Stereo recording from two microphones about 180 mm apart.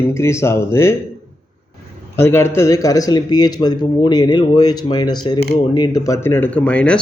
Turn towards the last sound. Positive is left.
turn(degrees=5)  # may be behind; listen again after turning